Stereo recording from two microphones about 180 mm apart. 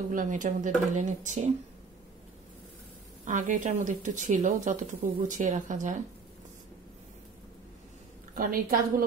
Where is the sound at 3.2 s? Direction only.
45° right (ahead or behind).